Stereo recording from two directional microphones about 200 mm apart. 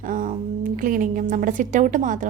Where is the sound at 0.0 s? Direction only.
45° right (ahead or behind).